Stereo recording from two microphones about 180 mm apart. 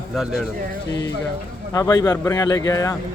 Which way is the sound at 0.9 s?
20° left (ahead or behind).